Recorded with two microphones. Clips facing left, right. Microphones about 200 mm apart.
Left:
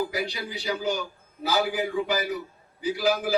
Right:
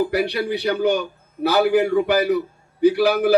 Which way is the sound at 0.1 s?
65° right (ahead or behind).